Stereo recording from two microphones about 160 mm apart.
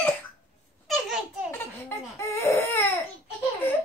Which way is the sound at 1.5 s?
15° left (ahead or behind).